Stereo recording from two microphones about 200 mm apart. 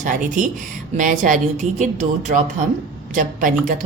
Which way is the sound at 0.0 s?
40° right (ahead or behind).